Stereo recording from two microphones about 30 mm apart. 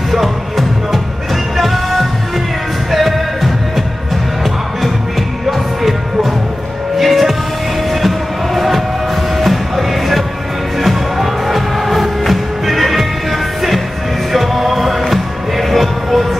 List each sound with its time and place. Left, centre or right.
0.1 s music: centre
5.5 s music: centre